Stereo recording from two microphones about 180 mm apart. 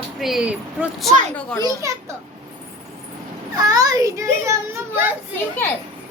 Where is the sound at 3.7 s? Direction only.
20° right (ahead or behind).